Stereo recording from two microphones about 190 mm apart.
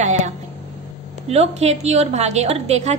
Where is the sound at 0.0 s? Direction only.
35° right (ahead or behind).